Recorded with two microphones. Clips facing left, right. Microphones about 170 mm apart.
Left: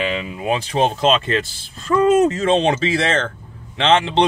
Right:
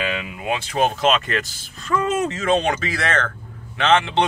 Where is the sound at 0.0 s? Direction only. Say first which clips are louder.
Left 3 dB; 30° left (ahead or behind).